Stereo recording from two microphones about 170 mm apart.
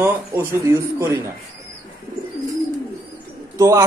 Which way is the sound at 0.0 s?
15° right (ahead or behind).